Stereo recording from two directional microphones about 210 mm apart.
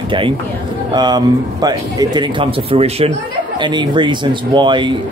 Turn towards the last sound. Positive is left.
turn(degrees=-20)  # may be behind; listen again after turning